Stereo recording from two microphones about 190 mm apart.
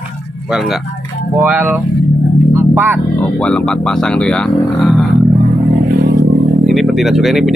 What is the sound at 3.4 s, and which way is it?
Speech, 5° left (ahead or behind).